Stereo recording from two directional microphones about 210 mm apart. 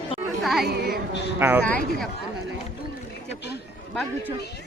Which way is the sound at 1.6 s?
5° left (ahead or behind).